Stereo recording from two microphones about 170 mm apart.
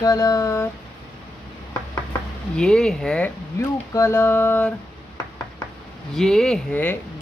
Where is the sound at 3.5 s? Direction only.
15° left (ahead or behind).